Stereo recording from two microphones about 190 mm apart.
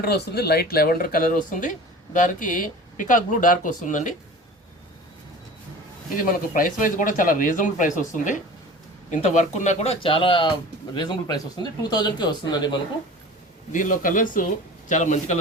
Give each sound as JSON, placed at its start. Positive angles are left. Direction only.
{"t": 0.0, "sound": "speech", "side_deg": 60}
{"t": 6.1, "sound": "speech", "side_deg": 45}
{"t": 13.7, "sound": "speech", "side_deg": 45}